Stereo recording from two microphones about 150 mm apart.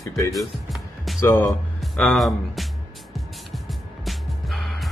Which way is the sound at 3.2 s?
Centre (ahead or behind).